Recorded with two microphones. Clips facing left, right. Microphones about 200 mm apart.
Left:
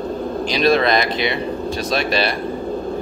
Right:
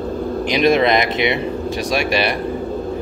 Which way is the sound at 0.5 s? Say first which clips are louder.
Right 2 dB; 20° right (ahead or behind).